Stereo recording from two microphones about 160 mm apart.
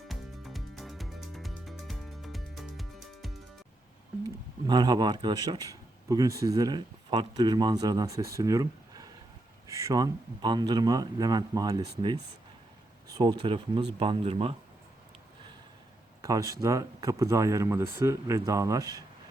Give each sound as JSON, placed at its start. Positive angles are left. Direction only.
{"t": 0.1, "sound": "music", "side_deg": 0}
{"t": 4.6, "sound": "speech", "side_deg": -25}
{"t": 13.1, "sound": "a sound", "side_deg": -25}
{"t": 13.4, "sound": "speech", "side_deg": -30}
{"t": 16.2, "sound": "speech", "side_deg": -20}